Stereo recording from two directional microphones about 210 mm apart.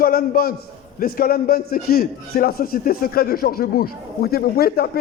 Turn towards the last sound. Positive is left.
turn(degrees=45)  # may be behind; listen again after turning